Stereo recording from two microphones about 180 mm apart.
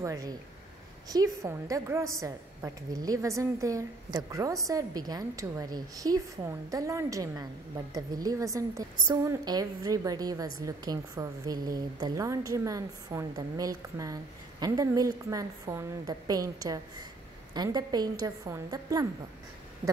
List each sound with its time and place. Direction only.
0.0 s a woman's voice: 20° right (ahead or behind)